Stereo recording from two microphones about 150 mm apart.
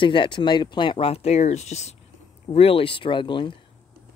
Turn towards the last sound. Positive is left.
turn(degrees=30)  # may be behind; listen again after turning